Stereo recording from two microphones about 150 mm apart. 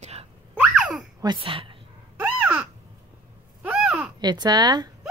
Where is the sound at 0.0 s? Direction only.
45° right (ahead or behind).